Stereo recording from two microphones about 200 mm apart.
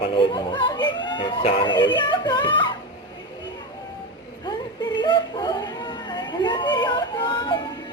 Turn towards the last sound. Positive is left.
turn(degrees=25)  # may be behind; listen again after turning